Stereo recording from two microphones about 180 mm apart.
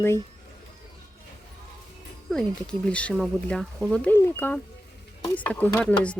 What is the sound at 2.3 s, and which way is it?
Speech, 5° left (ahead or behind).